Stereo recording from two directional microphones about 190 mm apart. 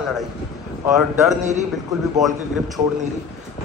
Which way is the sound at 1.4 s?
40° right (ahead or behind).